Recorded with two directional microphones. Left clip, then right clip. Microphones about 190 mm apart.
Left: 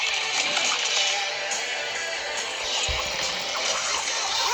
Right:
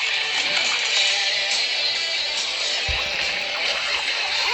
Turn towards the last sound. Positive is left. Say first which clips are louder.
# right 3 dB
turn(degrees=15)  # may be behind; listen again after turning